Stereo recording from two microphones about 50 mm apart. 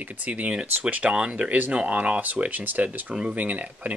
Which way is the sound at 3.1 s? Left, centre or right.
Centre.